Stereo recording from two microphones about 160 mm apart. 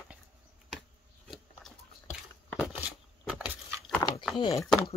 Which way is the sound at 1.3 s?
Centre (ahead or behind).